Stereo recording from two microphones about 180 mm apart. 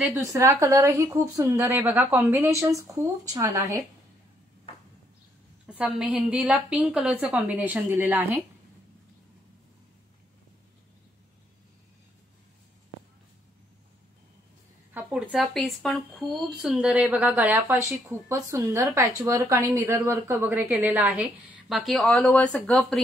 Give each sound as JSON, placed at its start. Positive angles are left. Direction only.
{"t": 0.0, "sound": "speech", "side_deg": -15}
{"t": 5.7, "sound": "speech", "side_deg": -5}
{"t": 15.0, "sound": "speech", "side_deg": -5}